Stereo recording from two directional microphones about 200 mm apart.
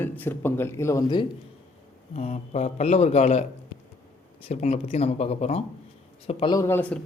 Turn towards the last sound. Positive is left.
turn(degrees=10)  # may be behind; listen again after turning